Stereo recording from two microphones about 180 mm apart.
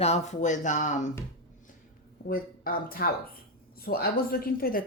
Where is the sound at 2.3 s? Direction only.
55° left (ahead or behind).